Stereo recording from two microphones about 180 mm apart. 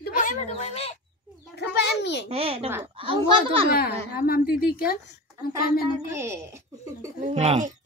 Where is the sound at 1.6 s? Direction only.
75° left (ahead or behind).